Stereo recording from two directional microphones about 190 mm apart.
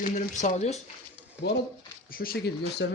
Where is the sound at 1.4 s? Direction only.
60° left (ahead or behind).